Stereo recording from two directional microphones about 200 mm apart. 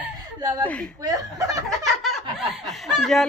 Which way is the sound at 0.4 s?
20° right (ahead or behind).